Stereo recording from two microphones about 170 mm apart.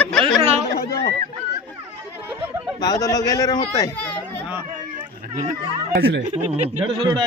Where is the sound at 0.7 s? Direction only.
65° left (ahead or behind).